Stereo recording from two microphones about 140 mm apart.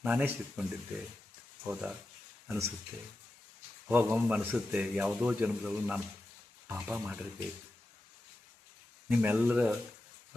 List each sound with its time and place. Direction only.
0.0 s a man's voice: 10° right (ahead or behind)
2.5 s speech: 20° right (ahead or behind)
3.8 s a man's voice: 10° right (ahead or behind)
9.0 s a man's voice: 10° right (ahead or behind)